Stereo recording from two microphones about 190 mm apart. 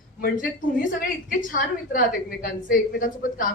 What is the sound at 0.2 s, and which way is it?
A woman's voice, 50° left (ahead or behind).